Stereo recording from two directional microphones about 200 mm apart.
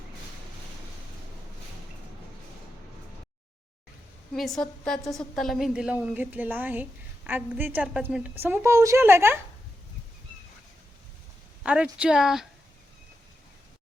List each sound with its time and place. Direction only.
4.4 s a woman's voice: centre (ahead or behind)
11.6 s a woman's voice: 5° right (ahead or behind)